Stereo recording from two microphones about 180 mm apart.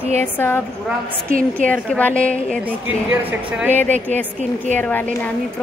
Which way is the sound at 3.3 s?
10° right (ahead or behind).